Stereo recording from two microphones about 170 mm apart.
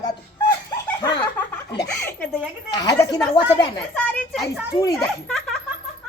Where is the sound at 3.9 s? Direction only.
5° left (ahead or behind).